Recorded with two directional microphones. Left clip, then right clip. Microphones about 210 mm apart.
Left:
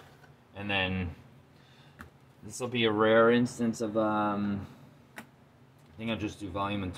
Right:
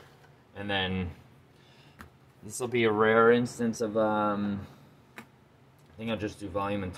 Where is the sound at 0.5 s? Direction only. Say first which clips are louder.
Even; 25° right (ahead or behind).